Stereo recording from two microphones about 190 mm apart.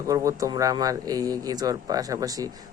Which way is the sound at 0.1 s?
15° right (ahead or behind).